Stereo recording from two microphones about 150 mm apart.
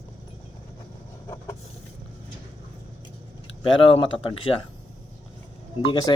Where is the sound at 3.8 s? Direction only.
35° left (ahead or behind).